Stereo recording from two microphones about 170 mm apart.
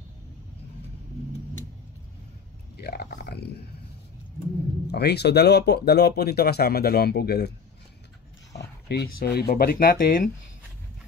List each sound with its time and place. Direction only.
2.8 s speech: 70° left (ahead or behind)
4.8 s speech: 75° left (ahead or behind)
8.5 s speech: 75° left (ahead or behind); by 10.3 s 55° left (ahead or behind)